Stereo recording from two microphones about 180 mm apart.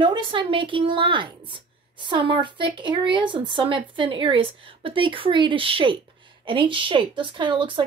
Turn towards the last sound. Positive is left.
turn(degrees=-25)  # may be behind; listen again after turning